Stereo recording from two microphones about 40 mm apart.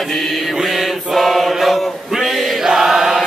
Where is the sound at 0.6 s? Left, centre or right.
Centre.